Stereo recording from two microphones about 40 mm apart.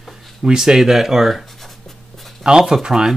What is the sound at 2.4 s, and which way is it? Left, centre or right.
Speech, centre.